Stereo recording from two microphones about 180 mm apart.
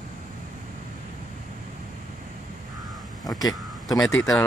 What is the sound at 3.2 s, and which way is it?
Vehicle, 20° left (ahead or behind).